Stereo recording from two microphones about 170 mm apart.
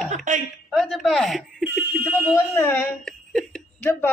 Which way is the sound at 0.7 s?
Centre (ahead or behind).